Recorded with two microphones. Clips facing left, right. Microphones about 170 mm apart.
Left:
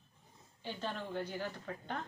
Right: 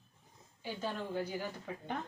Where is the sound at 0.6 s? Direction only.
10° right (ahead or behind).